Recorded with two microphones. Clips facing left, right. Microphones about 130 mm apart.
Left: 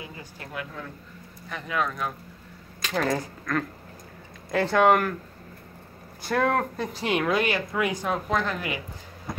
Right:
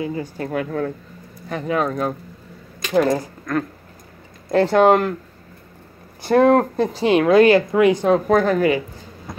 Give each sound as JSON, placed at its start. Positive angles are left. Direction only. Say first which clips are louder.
{"t": 0.0, "sound": "speech", "louder": "right 15 dB", "side_deg": -40}
{"t": 0.7, "sound": "speech", "louder": "right 15 dB", "side_deg": -60}
{"t": 1.5, "sound": "speech", "louder": "right 8 dB", "side_deg": -40}
{"t": 2.8, "sound": "speech", "louder": "right 8 dB", "side_deg": -15}
{"t": 4.5, "sound": "speech", "louder": "right 6 dB", "side_deg": -30}
{"t": 6.2, "sound": "speech", "louder": "right 10 dB", "side_deg": -25}
{"t": 8.3, "sound": "a woman's voice", "louder": "right 12 dB", "side_deg": -45}